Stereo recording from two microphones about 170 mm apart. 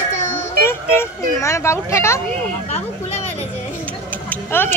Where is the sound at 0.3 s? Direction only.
15° left (ahead or behind).